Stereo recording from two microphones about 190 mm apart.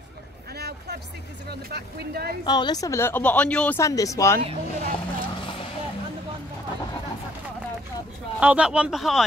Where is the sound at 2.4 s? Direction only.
20° left (ahead or behind).